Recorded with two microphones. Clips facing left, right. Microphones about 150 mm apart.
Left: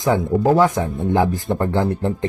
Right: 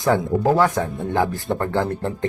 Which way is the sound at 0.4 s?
15° left (ahead or behind).